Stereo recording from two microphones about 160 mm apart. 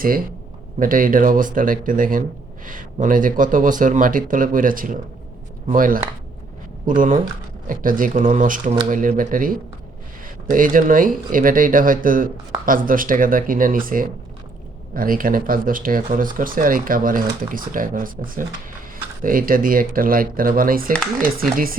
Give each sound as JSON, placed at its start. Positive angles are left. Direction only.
{"t": 0.8, "sound": "speech", "side_deg": -60}
{"t": 20.9, "sound": "speech", "side_deg": 5}